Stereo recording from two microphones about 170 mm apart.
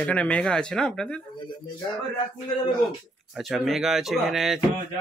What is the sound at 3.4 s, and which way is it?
Speech, centre (ahead or behind).